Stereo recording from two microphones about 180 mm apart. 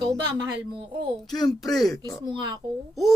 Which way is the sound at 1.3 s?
20° left (ahead or behind).